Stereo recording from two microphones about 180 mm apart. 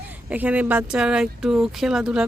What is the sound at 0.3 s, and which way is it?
Speech, 10° right (ahead or behind).